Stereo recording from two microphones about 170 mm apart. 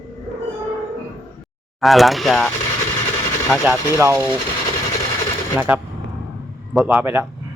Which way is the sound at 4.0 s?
15° right (ahead or behind).